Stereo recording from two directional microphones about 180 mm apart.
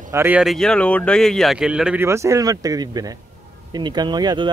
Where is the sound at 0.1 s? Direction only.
10° right (ahead or behind).